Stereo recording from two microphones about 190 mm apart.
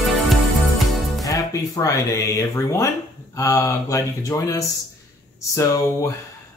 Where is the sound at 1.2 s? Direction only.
15° left (ahead or behind).